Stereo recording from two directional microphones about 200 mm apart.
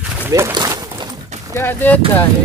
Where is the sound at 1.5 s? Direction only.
10° left (ahead or behind).